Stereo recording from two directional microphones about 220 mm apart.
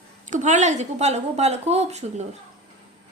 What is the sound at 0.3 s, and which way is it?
A woman's voice, 35° right (ahead or behind).